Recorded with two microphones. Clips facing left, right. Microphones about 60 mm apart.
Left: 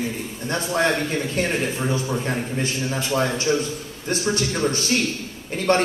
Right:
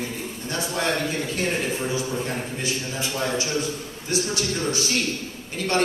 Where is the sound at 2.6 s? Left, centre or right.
Left.